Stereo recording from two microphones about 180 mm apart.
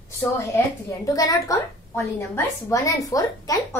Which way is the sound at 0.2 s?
15° left (ahead or behind).